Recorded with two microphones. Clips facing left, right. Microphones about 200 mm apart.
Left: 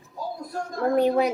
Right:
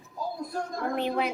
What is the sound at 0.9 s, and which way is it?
Speech, 40° left (ahead or behind).